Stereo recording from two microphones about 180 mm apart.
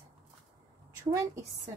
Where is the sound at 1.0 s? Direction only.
15° right (ahead or behind).